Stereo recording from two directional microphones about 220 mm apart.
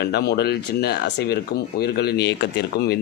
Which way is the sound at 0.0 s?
45° left (ahead or behind).